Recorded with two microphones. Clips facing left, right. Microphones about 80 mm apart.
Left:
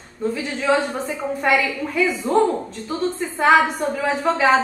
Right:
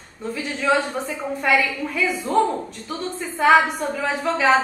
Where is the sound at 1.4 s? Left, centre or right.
Centre.